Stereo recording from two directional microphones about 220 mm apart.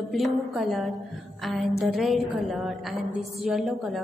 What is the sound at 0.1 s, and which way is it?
A woman's voice, centre (ahead or behind).